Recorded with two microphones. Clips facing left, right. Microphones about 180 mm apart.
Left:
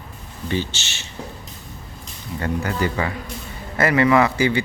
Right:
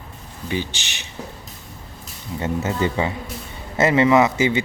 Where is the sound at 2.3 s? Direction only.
20° right (ahead or behind).